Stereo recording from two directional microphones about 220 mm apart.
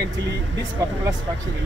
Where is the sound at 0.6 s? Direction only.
15° right (ahead or behind).